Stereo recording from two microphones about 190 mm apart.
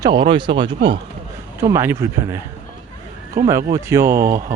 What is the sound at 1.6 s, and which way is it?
Speech, 15° right (ahead or behind).